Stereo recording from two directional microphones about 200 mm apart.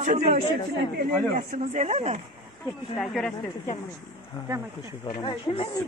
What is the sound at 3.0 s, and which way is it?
Speech, centre (ahead or behind).